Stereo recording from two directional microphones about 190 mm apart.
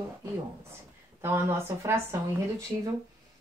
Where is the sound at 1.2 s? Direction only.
10° right (ahead or behind).